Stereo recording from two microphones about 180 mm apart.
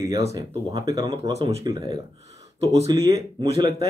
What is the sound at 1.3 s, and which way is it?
Speech, 35° right (ahead or behind).